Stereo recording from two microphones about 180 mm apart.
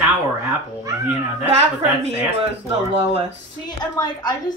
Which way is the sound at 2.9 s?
35° right (ahead or behind).